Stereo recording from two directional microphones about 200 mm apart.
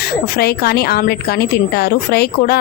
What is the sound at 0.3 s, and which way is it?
Speech, 50° left (ahead or behind).